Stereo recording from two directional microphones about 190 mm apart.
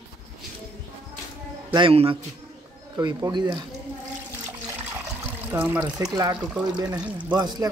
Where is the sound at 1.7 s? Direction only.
30° right (ahead or behind).